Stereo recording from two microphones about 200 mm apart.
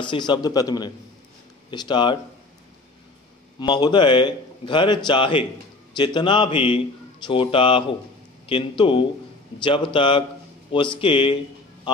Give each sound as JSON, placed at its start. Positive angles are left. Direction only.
{"t": 0.0, "sound": "a man's voice", "side_deg": 25}
{"t": 3.5, "sound": "a man's voice", "side_deg": 20}